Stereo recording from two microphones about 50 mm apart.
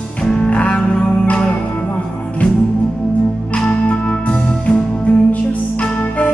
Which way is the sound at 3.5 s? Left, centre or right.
Left.